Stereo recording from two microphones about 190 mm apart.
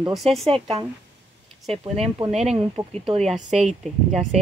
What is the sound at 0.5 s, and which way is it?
Speech, 30° right (ahead or behind).